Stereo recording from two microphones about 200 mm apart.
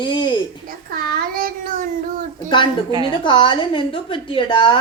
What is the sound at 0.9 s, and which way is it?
Child singing, 50° right (ahead or behind).